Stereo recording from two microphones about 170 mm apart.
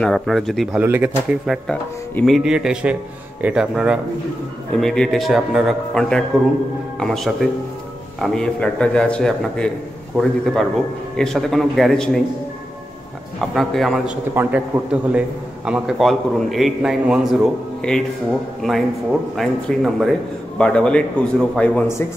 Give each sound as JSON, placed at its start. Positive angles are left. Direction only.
{"t": 0.0, "sound": "a man's voice", "side_deg": 0}
{"t": 0.7, "sound": "a man's voice", "side_deg": -10}
{"t": 13.4, "sound": "a man's voice", "side_deg": 0}
{"t": 17.8, "sound": "a man's voice", "side_deg": 5}